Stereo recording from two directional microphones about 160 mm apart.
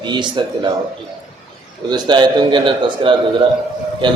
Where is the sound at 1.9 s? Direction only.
25° right (ahead or behind).